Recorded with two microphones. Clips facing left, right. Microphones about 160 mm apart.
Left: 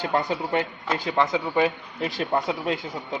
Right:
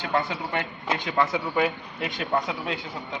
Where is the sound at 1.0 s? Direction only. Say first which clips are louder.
Left 2 dB; 25° left (ahead or behind).